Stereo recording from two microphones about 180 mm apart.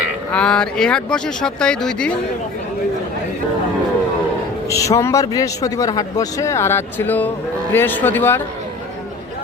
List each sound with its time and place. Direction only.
0.3 s speech: 5° left (ahead or behind)
4.7 s a man's voice: 15° left (ahead or behind)